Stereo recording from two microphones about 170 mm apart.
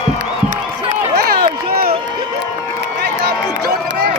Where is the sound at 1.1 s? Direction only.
65° right (ahead or behind).